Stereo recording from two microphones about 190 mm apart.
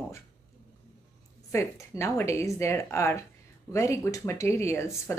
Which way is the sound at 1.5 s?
15° left (ahead or behind).